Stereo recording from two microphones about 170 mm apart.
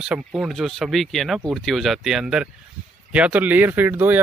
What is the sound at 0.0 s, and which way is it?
Speech, 5° right (ahead or behind).